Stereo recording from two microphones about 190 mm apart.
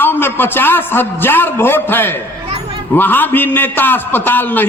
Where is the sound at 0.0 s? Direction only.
10° left (ahead or behind).